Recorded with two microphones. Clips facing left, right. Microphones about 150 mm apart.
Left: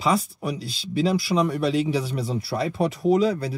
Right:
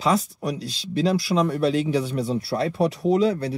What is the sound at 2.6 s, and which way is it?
Speech, 10° left (ahead or behind).